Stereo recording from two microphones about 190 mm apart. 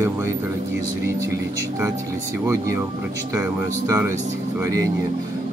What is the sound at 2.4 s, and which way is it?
Speech, 15° right (ahead or behind).